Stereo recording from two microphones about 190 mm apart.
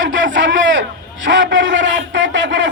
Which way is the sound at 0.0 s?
75° right (ahead or behind).